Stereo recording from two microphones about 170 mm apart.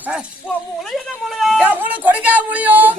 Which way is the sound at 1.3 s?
Centre (ahead or behind).